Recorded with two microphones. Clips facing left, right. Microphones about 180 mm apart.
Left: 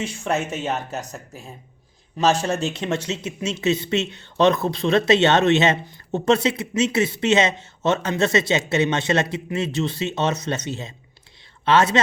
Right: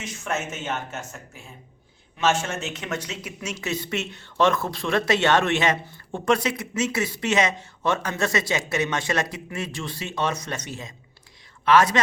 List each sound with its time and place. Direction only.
0.0 s a man's voice: 30° left (ahead or behind)